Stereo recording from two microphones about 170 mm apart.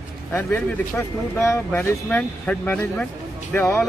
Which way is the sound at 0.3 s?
10° left (ahead or behind).